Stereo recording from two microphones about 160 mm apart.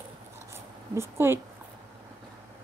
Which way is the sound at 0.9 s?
15° right (ahead or behind).